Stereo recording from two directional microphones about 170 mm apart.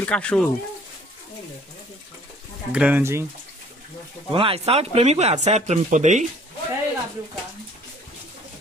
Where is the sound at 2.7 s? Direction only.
5° right (ahead or behind).